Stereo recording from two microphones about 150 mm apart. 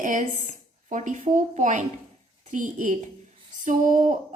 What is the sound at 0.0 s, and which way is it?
A woman's voice, 60° right (ahead or behind).